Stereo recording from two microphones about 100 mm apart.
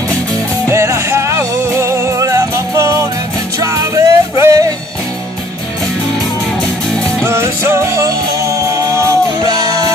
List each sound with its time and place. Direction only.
0.7 s music: 30° right (ahead or behind)
7.2 s music: 30° right (ahead or behind)
9.4 s music: 40° right (ahead or behind)